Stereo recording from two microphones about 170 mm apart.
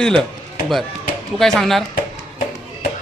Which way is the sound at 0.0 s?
5° left (ahead or behind).